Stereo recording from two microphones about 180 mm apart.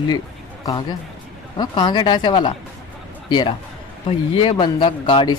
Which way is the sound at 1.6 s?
25° left (ahead or behind).